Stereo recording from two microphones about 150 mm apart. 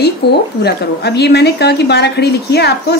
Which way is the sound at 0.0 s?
90° left.